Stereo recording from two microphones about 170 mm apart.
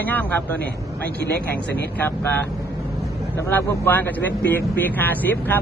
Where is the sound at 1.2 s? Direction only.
75° left (ahead or behind).